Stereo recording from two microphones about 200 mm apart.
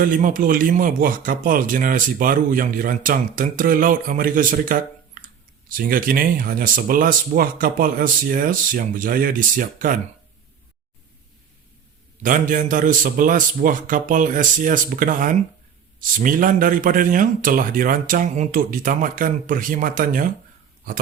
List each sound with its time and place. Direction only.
0.0 s speech: 40° right (ahead or behind)
12.2 s a man's voice: 40° right (ahead or behind)